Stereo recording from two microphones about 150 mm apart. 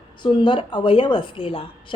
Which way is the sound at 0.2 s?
30° left (ahead or behind).